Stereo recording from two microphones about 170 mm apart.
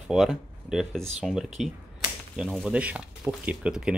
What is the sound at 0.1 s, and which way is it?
Speech, centre (ahead or behind).